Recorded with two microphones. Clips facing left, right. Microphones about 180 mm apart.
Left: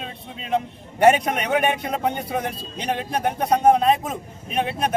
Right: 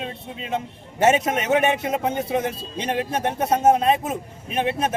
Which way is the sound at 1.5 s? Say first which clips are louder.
Right 3 dB; 25° right (ahead or behind).